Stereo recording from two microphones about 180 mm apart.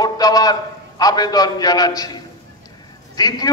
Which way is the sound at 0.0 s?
20° left (ahead or behind).